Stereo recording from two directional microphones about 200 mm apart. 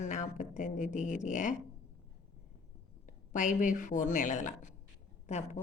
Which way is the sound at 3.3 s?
40° left (ahead or behind).